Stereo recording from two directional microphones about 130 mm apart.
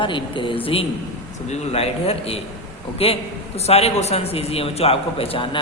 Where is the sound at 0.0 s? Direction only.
40° left (ahead or behind).